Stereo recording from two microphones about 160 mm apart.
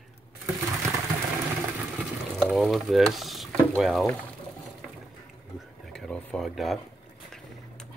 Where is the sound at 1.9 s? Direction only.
Centre (ahead or behind).